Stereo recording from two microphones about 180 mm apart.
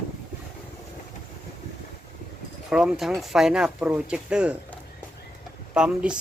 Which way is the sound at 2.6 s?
5° right (ahead or behind).